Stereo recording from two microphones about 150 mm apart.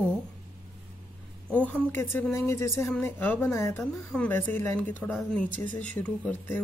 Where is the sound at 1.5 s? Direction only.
10° left (ahead or behind).